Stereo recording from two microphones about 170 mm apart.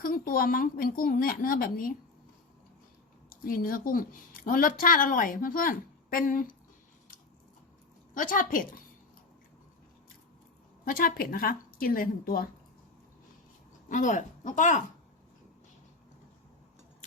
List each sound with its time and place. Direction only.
0.0 s a woman's voice: 60° left (ahead or behind)
3.2 s a woman's voice: 55° left (ahead or behind)
8.1 s a woman's voice: 50° left (ahead or behind)
10.8 s a woman's voice: 60° left (ahead or behind)
13.8 s speech: 50° left (ahead or behind)